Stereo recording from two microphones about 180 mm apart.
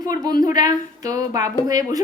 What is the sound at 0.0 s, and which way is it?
A woman's voice, 20° right (ahead or behind).